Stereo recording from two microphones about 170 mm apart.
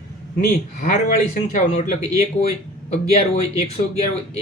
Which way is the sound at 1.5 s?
45° left (ahead or behind).